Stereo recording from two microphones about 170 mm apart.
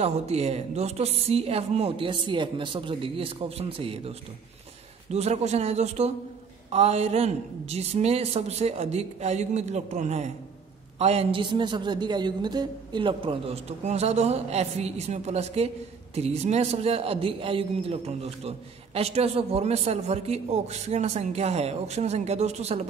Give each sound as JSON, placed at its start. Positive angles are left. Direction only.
{"t": 0.0, "sound": "a woman's voice", "side_deg": -40}